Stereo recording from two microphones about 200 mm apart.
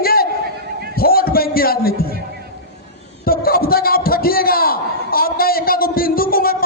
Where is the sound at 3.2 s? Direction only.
50° left (ahead or behind).